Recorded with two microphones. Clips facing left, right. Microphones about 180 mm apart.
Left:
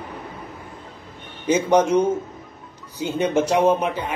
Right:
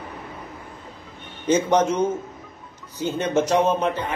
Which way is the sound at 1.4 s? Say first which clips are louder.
Left 1 dB; 10° left (ahead or behind).